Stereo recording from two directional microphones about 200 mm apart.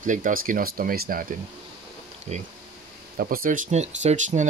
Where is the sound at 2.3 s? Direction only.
35° right (ahead or behind).